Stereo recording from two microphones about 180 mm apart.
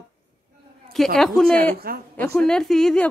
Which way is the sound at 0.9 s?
Centre (ahead or behind).